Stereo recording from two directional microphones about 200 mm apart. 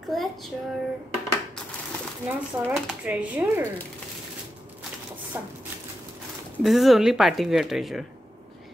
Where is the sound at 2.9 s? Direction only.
5° right (ahead or behind).